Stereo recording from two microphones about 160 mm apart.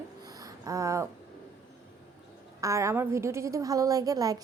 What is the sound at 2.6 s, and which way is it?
A woman's voice, 20° right (ahead or behind).